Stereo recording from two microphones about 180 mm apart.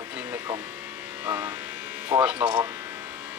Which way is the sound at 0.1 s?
10° right (ahead or behind).